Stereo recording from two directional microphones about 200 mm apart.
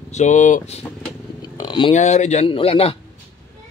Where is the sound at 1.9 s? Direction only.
35° left (ahead or behind).